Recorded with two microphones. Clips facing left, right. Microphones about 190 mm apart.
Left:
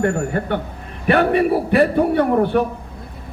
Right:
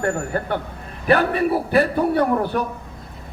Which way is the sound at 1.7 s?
40° right (ahead or behind).